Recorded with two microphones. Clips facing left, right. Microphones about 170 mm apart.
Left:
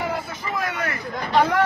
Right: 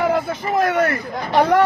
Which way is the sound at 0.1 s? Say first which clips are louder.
Right 8 dB; 50° right (ahead or behind).